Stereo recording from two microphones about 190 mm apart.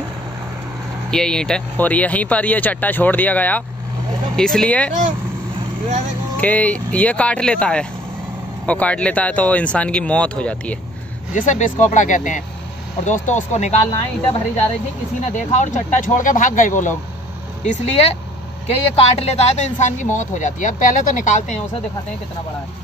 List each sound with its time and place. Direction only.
1.1 s speech: 5° left (ahead or behind)
6.3 s speech: 10° left (ahead or behind)
11.3 s speech: 40° left (ahead or behind)
15.5 s speech: 40° left (ahead or behind)